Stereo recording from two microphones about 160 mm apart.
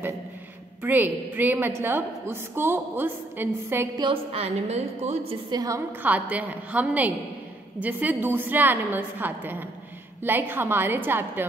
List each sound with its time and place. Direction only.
0.8 s a woman's voice: 10° right (ahead or behind)
4.0 s a woman's voice: 35° right (ahead or behind)
5.5 s a woman's voice: 25° right (ahead or behind)
6.0 s a woman's voice: 10° right (ahead or behind)